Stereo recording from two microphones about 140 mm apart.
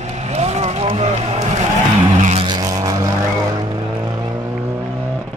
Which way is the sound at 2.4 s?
30° right (ahead or behind).